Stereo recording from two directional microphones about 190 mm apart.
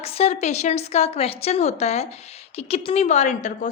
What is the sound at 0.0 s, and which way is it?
A woman's voice, 30° left (ahead or behind).